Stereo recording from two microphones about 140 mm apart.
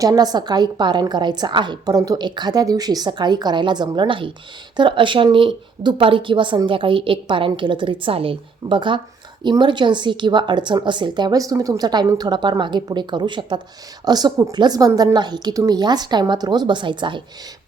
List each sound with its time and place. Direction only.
0.0 s a woman's voice: 25° right (ahead or behind)